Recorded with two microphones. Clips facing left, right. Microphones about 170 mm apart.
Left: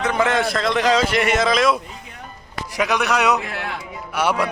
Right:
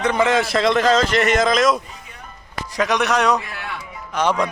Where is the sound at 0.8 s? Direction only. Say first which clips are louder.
Left 2 dB; 10° left (ahead or behind).